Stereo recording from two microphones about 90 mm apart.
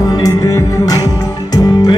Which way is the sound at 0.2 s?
40° left (ahead or behind).